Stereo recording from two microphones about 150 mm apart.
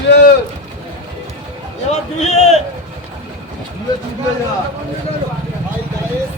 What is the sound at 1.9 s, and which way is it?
Speech, 50° left (ahead or behind).